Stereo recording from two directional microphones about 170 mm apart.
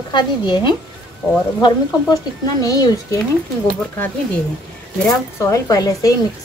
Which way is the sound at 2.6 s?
20° left (ahead or behind).